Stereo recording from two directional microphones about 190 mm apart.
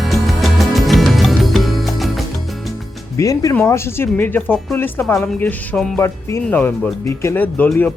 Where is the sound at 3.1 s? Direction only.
15° left (ahead or behind).